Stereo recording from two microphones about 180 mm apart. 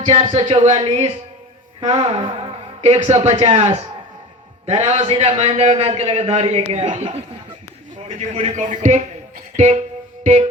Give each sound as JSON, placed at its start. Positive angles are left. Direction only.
{"t": 0.0, "sound": "a man's voice", "side_deg": -35}